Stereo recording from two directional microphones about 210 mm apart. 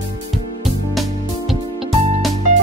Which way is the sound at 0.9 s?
Centre (ahead or behind).